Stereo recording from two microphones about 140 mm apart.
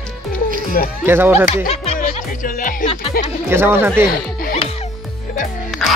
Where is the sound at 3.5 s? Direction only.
15° right (ahead or behind).